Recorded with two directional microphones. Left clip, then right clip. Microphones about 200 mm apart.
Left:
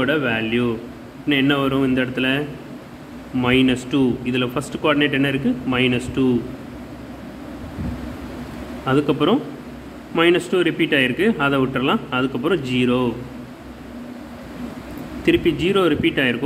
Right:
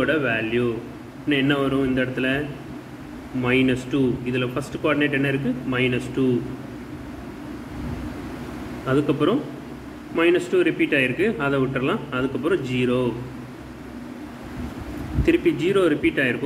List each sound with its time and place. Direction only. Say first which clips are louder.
0.0 s a man's voice: left 2 dB; 40° left (ahead or behind)
3.4 s a man's voice: left 3 dB; 40° left (ahead or behind)
8.8 s a man's voice: left 3 dB; 40° left (ahead or behind)
15.2 s a man's voice: left 2 dB; 40° left (ahead or behind)